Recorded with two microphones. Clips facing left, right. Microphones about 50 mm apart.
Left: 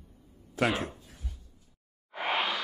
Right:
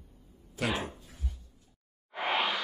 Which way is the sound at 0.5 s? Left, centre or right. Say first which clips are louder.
Left 4 dB; left.